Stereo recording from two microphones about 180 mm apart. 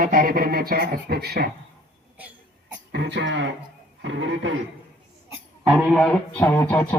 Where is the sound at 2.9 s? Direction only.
70° right (ahead or behind); by 4.5 s 90° right.